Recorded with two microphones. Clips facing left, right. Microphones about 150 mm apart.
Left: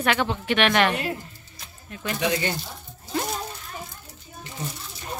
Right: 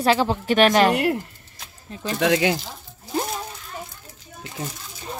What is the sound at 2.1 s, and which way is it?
Speech, 90° right.